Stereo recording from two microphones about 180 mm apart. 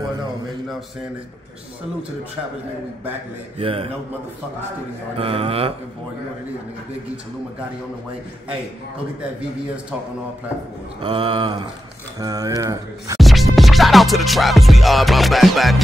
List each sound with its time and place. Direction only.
3.5 s mantra: 30° right (ahead or behind)
5.1 s mantra: 30° right (ahead or behind)
11.0 s speech: 30° right (ahead or behind)
13.2 s music: centre (ahead or behind)